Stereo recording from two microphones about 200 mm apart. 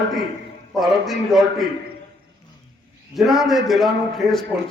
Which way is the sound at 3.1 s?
Centre (ahead or behind).